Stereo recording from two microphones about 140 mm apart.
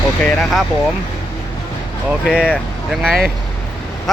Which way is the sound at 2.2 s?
5° right (ahead or behind).